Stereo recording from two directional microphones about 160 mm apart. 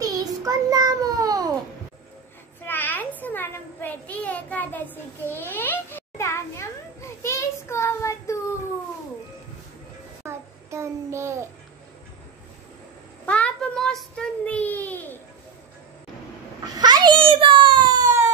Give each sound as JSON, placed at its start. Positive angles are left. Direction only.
{"t": 0.0, "sound": "child singing", "side_deg": -25}
{"t": 2.6, "sound": "child singing", "side_deg": 10}
{"t": 10.2, "sound": "a sound", "side_deg": -15}
{"t": 13.2, "sound": "child singing", "side_deg": 10}
{"t": 16.6, "sound": "babbling", "side_deg": -25}